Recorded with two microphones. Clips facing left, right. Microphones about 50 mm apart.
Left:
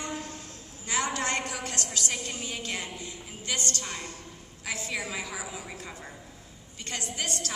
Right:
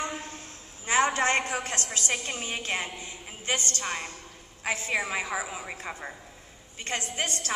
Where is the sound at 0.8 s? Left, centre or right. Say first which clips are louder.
Right 6 dB; right.